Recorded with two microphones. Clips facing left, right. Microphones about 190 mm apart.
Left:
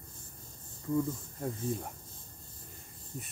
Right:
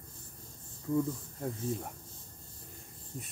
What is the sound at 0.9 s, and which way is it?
Speech, centre (ahead or behind).